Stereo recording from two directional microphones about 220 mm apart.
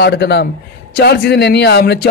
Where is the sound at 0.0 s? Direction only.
50° left (ahead or behind).